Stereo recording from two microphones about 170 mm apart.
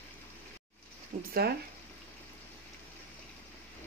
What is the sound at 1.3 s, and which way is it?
Speech, 65° right (ahead or behind).